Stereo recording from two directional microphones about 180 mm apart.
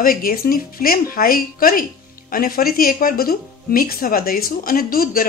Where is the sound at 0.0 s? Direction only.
55° left (ahead or behind).